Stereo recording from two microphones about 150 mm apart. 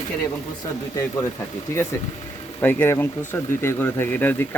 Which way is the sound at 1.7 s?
15° left (ahead or behind).